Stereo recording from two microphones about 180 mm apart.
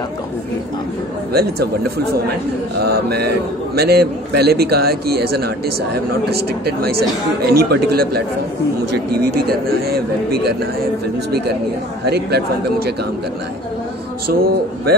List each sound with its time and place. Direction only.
1.3 s a man's voice: 60° right (ahead or behind)
2.8 s a man's voice: 60° right (ahead or behind)
12.1 s a man's voice: 65° right (ahead or behind)
14.2 s a man's voice: 55° right (ahead or behind)